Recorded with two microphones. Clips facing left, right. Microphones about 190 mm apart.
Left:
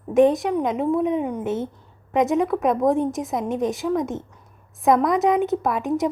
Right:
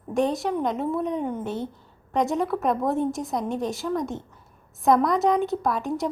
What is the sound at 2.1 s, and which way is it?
A woman's voice, centre (ahead or behind).